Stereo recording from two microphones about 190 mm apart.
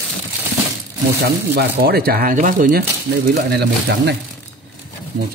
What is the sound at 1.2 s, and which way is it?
Speech, 55° right (ahead or behind).